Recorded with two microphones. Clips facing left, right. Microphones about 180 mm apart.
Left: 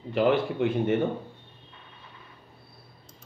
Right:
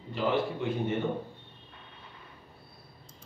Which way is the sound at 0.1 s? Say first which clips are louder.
Left 6 dB; 70° left (ahead or behind).